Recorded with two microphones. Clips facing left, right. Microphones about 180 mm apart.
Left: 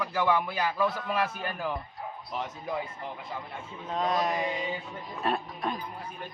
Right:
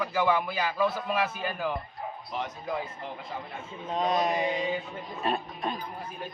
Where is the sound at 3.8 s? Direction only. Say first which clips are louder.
Right 1 dB; 20° right (ahead or behind).